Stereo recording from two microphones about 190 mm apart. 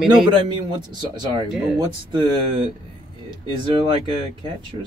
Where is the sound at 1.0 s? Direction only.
25° right (ahead or behind).